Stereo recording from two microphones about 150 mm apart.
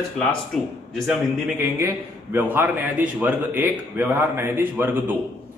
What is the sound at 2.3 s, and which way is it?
Speech, 15° right (ahead or behind).